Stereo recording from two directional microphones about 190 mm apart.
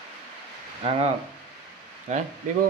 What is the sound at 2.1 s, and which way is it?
Speech, 35° right (ahead or behind).